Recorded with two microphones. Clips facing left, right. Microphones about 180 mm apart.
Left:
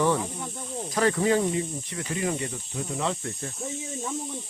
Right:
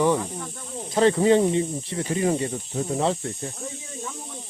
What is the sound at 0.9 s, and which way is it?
Speech, 25° right (ahead or behind).